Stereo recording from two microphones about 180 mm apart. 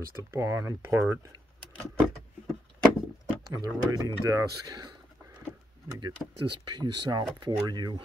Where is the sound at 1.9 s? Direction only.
Centre (ahead or behind).